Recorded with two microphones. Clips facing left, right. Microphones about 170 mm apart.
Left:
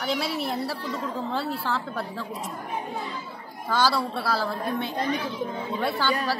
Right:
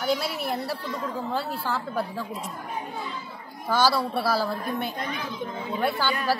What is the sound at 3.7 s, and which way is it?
Speech, centre (ahead or behind).